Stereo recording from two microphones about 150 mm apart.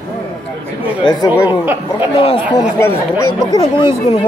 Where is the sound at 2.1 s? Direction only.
35° left (ahead or behind).